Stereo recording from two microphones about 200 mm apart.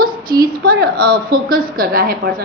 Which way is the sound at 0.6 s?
50° right (ahead or behind).